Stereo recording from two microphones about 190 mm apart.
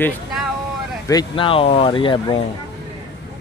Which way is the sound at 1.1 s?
25° left (ahead or behind).